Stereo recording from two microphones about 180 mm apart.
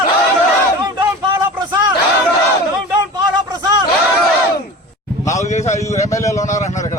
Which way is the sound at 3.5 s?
25° right (ahead or behind).